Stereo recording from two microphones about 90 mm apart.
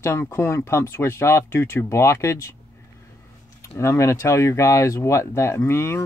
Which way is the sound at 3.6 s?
30° left (ahead or behind).